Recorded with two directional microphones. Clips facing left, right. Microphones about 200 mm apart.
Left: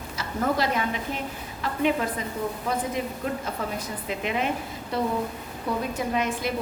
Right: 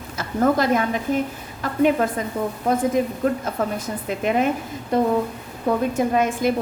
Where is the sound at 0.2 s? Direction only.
50° right (ahead or behind).